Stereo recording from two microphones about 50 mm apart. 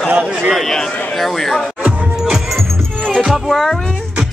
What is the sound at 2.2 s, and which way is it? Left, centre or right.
Music, centre.